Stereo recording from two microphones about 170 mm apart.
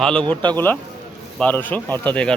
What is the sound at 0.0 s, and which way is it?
Speech, 5° left (ahead or behind).